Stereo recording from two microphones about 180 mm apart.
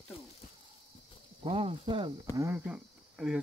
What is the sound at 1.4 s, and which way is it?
Speech, 30° right (ahead or behind).